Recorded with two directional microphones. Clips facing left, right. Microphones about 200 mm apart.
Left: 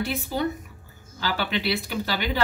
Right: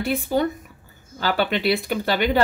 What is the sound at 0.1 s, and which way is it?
Speech, 55° right (ahead or behind).